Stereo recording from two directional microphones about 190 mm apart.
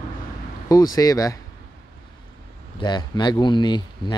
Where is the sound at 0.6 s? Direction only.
20° left (ahead or behind).